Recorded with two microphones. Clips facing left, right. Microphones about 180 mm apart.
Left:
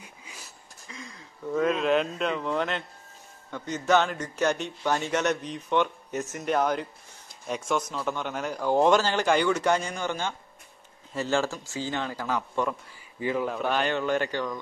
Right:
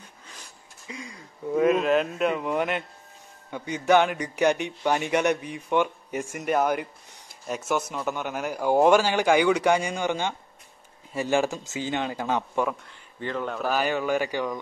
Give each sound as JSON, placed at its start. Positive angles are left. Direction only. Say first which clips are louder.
{"t": 0.0, "sound": "a sound", "louder": "left 1 dB", "side_deg": 10}
{"t": 1.5, "sound": "a man's voice", "louder": "right 3 dB", "side_deg": -10}
{"t": 13.2, "sound": "a man's voice", "louder": "left 2 dB", "side_deg": 5}